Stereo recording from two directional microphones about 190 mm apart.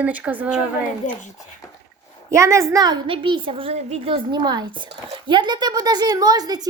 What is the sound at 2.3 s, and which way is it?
A woman's voice, 15° right (ahead or behind).